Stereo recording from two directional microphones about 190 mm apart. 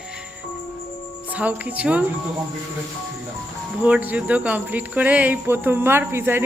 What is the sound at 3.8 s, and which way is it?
Speech, 10° right (ahead or behind).